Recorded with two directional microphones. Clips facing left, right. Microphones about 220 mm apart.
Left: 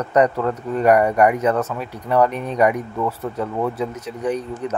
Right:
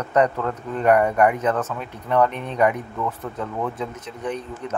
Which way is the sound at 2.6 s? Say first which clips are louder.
Left 2 dB; 10° left (ahead or behind).